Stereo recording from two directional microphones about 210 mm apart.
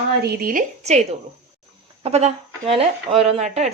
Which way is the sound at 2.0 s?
30° right (ahead or behind).